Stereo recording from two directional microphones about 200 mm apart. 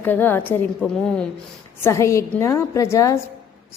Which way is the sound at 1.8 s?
15° left (ahead or behind).